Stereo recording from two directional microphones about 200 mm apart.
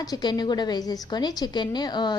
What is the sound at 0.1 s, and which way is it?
A woman's voice, 20° left (ahead or behind).